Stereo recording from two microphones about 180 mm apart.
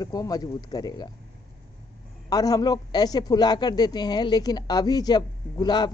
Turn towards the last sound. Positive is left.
turn(degrees=25)  # may be behind; listen again after turning